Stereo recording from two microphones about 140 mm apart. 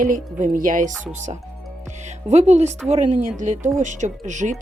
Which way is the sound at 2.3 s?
50° right (ahead or behind).